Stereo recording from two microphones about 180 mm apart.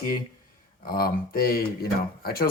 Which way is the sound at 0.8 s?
55° left (ahead or behind).